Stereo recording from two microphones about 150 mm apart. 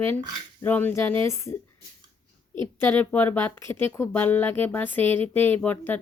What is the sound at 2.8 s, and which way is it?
Speech, 10° left (ahead or behind).